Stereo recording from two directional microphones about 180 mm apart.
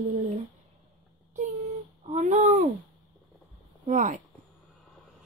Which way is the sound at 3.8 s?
45° right (ahead or behind).